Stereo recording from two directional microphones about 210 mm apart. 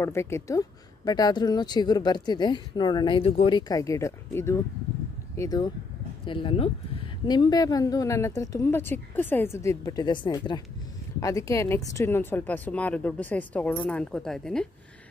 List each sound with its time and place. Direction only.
0.0 s a woman's voice: 15° left (ahead or behind)